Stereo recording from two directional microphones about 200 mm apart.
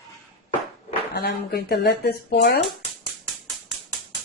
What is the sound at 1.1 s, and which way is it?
Speech, 55° left (ahead or behind).